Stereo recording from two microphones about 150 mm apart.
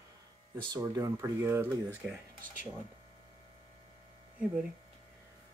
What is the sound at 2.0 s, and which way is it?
Speech, 5° right (ahead or behind).